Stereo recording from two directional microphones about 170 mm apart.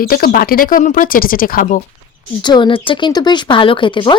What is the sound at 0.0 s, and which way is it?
Speech, 60° left (ahead or behind).